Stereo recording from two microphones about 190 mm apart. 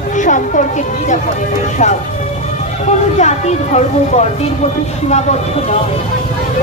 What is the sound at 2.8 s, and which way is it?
Speech, 35° left (ahead or behind).